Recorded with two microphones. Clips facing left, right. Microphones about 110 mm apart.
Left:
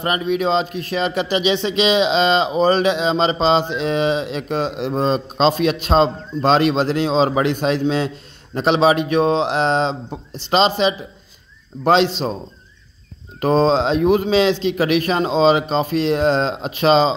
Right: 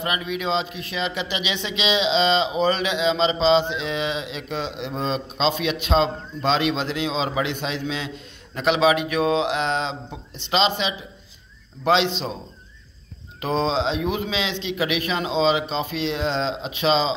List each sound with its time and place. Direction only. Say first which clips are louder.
0.0 s speech: left 7 dB; 40° left (ahead or behind)
13.4 s speech: left 7 dB; 40° left (ahead or behind)